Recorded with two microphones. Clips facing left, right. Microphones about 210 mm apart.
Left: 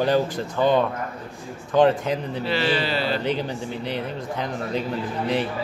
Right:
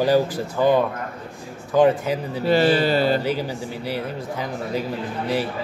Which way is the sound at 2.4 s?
45° right (ahead or behind).